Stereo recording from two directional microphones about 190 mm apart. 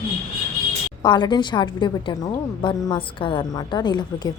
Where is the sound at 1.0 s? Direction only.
25° left (ahead or behind).